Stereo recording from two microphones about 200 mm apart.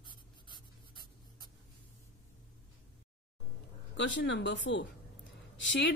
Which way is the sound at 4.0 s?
65° left (ahead or behind).